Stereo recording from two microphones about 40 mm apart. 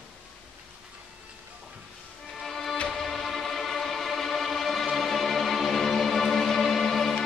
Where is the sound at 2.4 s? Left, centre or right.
Centre.